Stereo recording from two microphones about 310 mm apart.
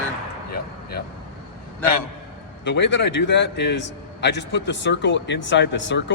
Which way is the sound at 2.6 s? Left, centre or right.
Left.